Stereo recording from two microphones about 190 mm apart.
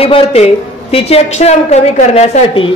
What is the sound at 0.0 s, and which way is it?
A man's voice, 30° left (ahead or behind).